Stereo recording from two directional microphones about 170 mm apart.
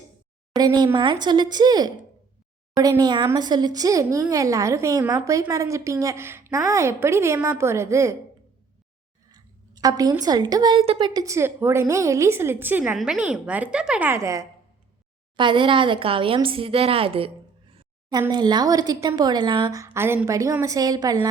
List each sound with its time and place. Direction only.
0.5 s a woman's voice: 25° right (ahead or behind)
9.3 s a woman's voice: 20° right (ahead or behind)
15.4 s a woman's voice: 30° right (ahead or behind)